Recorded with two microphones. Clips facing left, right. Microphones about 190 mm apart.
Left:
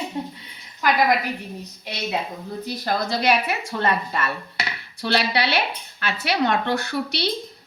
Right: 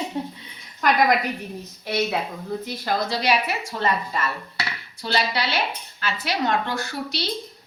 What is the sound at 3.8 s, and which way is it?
Speech, 60° left (ahead or behind).